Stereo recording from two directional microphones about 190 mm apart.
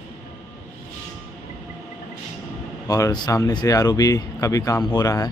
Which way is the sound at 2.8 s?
20° left (ahead or behind).